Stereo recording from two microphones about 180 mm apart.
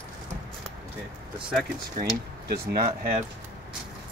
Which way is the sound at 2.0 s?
60° right (ahead or behind).